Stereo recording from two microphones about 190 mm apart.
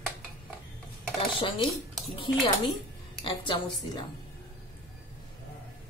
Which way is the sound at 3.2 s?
25° left (ahead or behind).